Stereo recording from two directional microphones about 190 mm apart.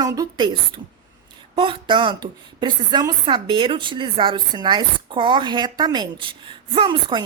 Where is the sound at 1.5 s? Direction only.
25° right (ahead or behind).